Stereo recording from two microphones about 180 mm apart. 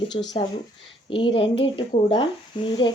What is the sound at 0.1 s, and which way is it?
Speech, 30° left (ahead or behind).